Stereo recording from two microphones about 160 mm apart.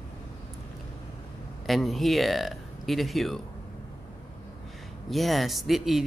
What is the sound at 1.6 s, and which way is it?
Speech, centre (ahead or behind).